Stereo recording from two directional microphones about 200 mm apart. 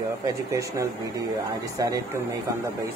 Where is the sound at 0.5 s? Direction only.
15° right (ahead or behind).